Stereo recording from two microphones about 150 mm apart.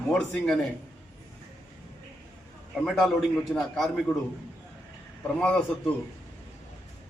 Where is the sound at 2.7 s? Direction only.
Centre (ahead or behind).